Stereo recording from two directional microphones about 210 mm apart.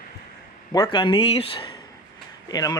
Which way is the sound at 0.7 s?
20° left (ahead or behind).